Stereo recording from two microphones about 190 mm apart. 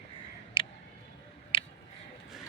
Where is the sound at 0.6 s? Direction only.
25° left (ahead or behind).